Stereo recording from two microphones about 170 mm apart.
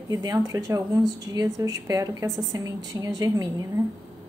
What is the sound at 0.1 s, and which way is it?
A woman's voice, 20° right (ahead or behind).